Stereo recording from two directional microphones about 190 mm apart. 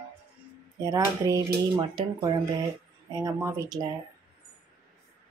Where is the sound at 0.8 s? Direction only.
15° right (ahead or behind).